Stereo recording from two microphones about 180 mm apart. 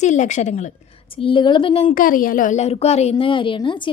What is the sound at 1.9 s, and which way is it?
A woman's voice, 50° left (ahead or behind).